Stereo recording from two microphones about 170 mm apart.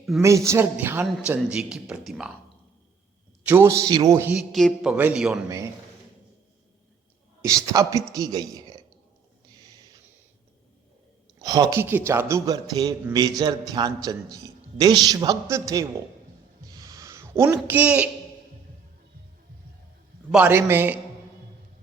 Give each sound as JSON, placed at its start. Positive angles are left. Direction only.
{"t": 0.2, "sound": "a man's voice", "side_deg": -15}
{"t": 3.4, "sound": "a man's voice", "side_deg": -15}
{"t": 4.5, "sound": "speech", "side_deg": 0}
{"t": 7.4, "sound": "a man's voice", "side_deg": -20}
{"t": 11.3, "sound": "a man's voice", "side_deg": -25}
{"t": 16.6, "sound": "a sound", "side_deg": -20}
{"t": 20.3, "sound": "a man's voice", "side_deg": -10}